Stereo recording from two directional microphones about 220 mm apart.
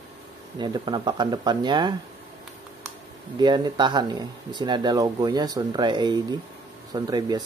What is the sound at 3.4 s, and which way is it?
Speech, 20° right (ahead or behind).